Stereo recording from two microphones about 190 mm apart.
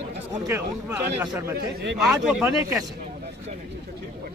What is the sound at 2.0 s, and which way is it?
Speech, 5° right (ahead or behind).